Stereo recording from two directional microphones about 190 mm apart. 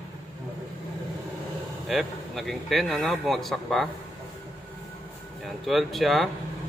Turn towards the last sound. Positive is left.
turn(degrees=0)  # may be behind; listen again after turning